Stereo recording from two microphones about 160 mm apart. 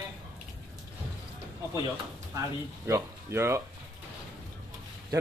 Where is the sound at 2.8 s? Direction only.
15° right (ahead or behind).